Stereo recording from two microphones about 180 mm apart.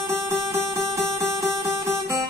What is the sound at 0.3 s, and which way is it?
Music, 15° right (ahead or behind).